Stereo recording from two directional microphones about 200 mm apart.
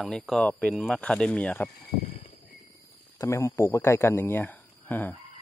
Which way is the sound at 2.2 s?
30° left (ahead or behind).